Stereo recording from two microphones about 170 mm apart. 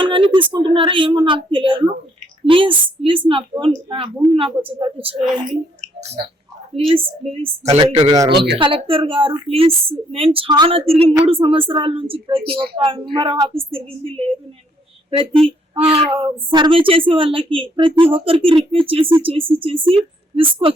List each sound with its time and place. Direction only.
0.0 s a woman's voice: 30° right (ahead or behind)
8.3 s speech: 75° right (ahead or behind)
8.5 s a woman's voice: 30° right (ahead or behind)